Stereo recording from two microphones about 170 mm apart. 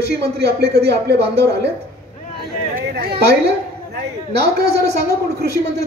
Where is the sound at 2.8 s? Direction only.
65° right (ahead or behind).